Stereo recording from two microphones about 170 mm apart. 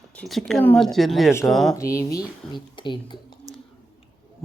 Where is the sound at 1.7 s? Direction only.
20° left (ahead or behind).